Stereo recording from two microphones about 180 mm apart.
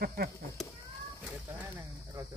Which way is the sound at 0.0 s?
60° right (ahead or behind).